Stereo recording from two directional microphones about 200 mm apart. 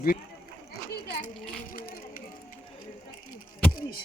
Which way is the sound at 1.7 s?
45° left (ahead or behind).